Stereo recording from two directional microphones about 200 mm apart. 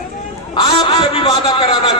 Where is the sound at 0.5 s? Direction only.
25° left (ahead or behind).